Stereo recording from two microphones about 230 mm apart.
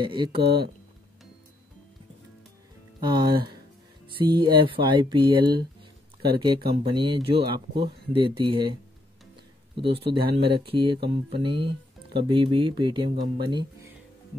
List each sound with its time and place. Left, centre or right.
0.0 s speech: right
3.0 s speech: centre
6.8 s speech: right
9.8 s speech: right